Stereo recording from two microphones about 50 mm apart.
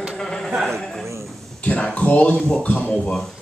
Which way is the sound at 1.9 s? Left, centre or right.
Left.